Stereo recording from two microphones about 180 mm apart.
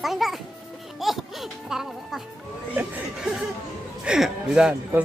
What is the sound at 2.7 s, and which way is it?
Chuckle, 5° right (ahead or behind).